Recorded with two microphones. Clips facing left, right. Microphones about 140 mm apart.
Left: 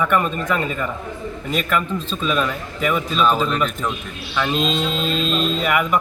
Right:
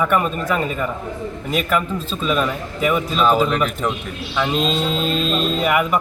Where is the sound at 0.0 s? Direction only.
10° right (ahead or behind).